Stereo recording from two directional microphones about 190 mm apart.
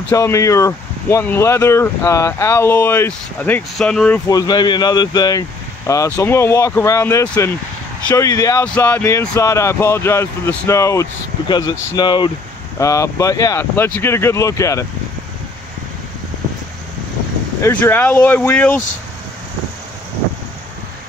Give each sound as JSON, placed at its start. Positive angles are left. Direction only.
{"t": 0.1, "sound": "speech", "side_deg": 15}
{"t": 4.3, "sound": "speech", "side_deg": 20}
{"t": 17.6, "sound": "speech", "side_deg": 15}